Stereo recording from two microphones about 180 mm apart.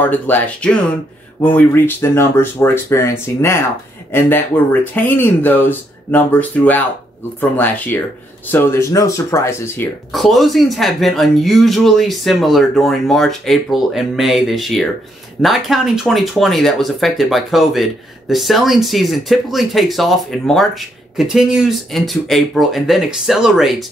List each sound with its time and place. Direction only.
0.0 s speech: 10° left (ahead or behind)
10.1 s speech: centre (ahead or behind)